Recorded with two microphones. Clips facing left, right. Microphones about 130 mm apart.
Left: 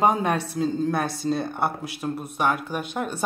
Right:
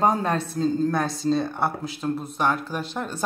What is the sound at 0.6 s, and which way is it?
Speech, 5° left (ahead or behind).